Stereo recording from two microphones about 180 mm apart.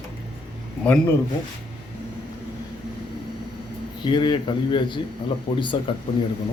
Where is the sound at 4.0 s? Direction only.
25° left (ahead or behind).